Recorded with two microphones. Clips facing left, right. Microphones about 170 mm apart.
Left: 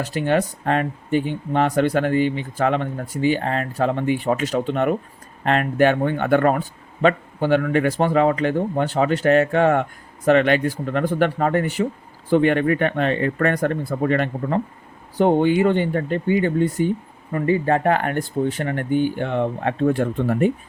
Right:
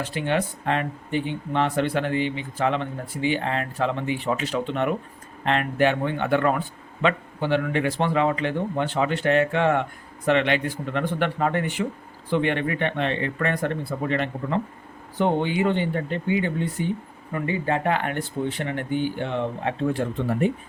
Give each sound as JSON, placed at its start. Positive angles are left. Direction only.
{"t": 0.0, "sound": "speech", "side_deg": 40}